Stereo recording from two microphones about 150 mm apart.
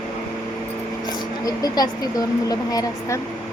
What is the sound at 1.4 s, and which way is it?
A woman's voice, 25° left (ahead or behind).